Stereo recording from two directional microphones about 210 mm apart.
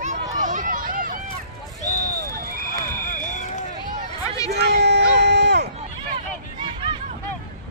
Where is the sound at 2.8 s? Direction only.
35° left (ahead or behind).